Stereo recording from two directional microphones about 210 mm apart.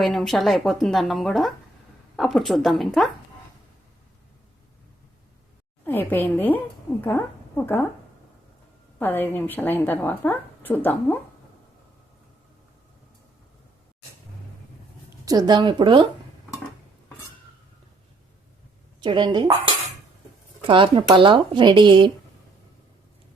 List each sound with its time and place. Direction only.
0.0 s speech: centre (ahead or behind)
5.8 s a woman's voice: 10° left (ahead or behind)
9.0 s a woman's voice: 10° left (ahead or behind)
15.2 s speech: 20° right (ahead or behind)
18.9 s speech: 20° right (ahead or behind)